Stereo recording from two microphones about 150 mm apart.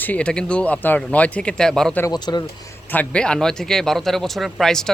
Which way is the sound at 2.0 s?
30° left (ahead or behind).